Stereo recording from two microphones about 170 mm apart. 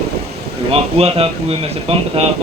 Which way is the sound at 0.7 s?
35° right (ahead or behind).